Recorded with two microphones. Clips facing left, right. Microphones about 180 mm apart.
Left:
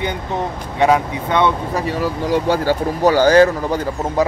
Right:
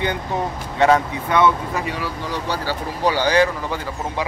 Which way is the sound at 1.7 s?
40° left (ahead or behind).